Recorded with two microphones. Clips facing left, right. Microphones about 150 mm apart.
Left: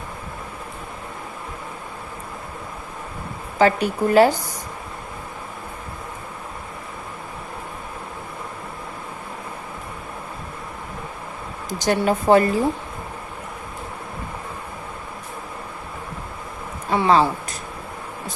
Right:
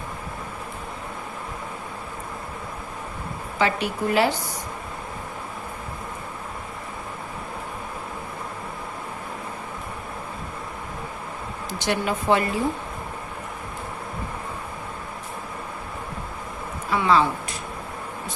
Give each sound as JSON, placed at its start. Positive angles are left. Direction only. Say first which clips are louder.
{"t": 3.6, "sound": "speech", "louder": "left 6 dB", "side_deg": 40}
{"t": 11.7, "sound": "speech", "louder": "left 5 dB", "side_deg": 40}
{"t": 16.9, "sound": "speech", "louder": "left 3 dB", "side_deg": 35}